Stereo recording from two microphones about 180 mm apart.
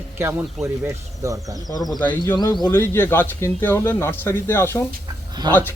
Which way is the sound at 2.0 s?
10° left (ahead or behind).